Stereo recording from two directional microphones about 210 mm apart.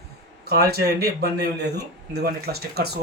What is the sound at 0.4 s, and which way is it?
Speech, 50° right (ahead or behind).